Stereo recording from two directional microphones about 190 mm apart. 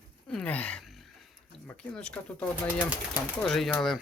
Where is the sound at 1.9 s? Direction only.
5° left (ahead or behind).